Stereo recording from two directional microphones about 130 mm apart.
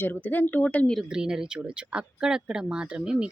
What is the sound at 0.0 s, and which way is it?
Speech, 15° left (ahead or behind).